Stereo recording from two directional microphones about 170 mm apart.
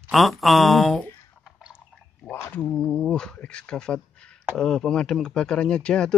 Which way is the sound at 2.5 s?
5° left (ahead or behind).